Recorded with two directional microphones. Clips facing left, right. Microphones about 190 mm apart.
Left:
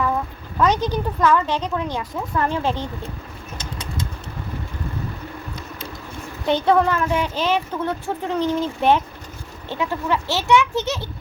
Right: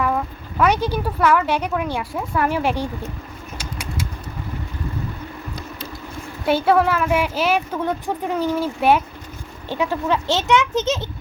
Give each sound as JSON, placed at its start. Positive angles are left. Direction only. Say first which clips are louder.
{"t": 0.6, "sound": "speech", "louder": "right 1 dB", "side_deg": -10}
{"t": 3.6, "sound": "bird flight", "louder": "right 1 dB", "side_deg": -10}
{"t": 6.4, "sound": "speech", "louder": "right 1 dB", "side_deg": -5}